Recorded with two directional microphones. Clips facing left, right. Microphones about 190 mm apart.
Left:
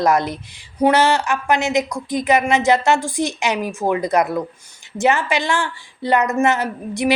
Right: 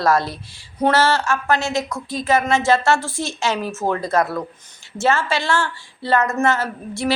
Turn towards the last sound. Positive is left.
turn(degrees=15)  # may be behind; listen again after turning